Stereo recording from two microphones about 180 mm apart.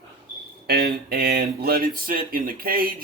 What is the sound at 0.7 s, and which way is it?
Speech, 60° right (ahead or behind).